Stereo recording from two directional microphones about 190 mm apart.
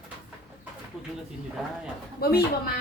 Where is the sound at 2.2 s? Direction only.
55° left (ahead or behind).